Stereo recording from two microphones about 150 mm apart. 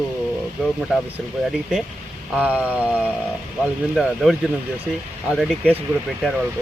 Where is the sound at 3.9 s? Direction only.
Centre (ahead or behind).